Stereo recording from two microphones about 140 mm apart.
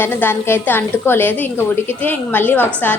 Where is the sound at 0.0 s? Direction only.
15° left (ahead or behind).